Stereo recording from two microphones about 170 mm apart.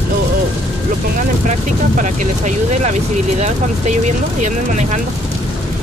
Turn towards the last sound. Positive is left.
turn(degrees=-45)  # may be behind; listen again after turning